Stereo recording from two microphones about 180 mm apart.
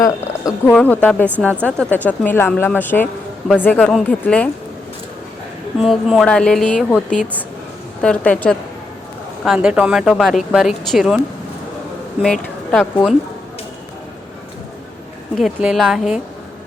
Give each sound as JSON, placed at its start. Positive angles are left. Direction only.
{"t": 0.0, "sound": "speech", "side_deg": 15}
{"t": 5.8, "sound": "speech", "side_deg": 0}
{"t": 9.4, "sound": "speech", "side_deg": -5}
{"t": 12.2, "sound": "speech", "side_deg": 5}
{"t": 15.4, "sound": "speech", "side_deg": 0}